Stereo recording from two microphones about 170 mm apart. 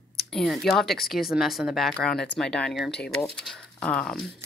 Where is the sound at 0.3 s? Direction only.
5° left (ahead or behind).